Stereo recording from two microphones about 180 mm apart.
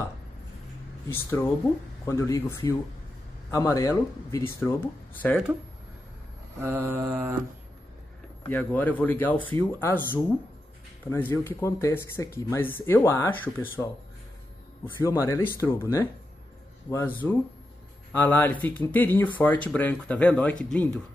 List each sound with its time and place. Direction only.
1.0 s speech: 15° left (ahead or behind)
6.6 s mantra: 10° right (ahead or behind)
8.5 s speech: 10° left (ahead or behind)
11.1 s speech: 10° left (ahead or behind)
15.0 s speech: 15° left (ahead or behind)